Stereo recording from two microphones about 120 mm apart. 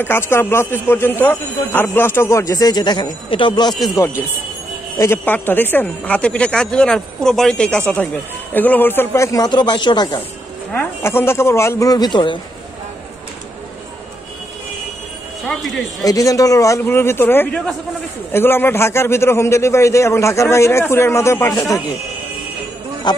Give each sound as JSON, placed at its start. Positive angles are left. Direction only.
{"t": 0.0, "sound": "speech", "side_deg": 20}
{"t": 3.9, "sound": "speech", "side_deg": 20}
{"t": 10.7, "sound": "speech", "side_deg": 15}
{"t": 15.4, "sound": "speech", "side_deg": 5}
{"t": 16.0, "sound": "speech", "side_deg": 30}
{"t": 23.1, "sound": "speech", "side_deg": 40}